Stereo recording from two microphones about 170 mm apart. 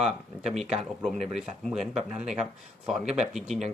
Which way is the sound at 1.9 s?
40° right (ahead or behind).